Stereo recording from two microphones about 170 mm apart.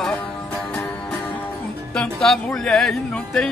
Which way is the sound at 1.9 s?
Centre (ahead or behind).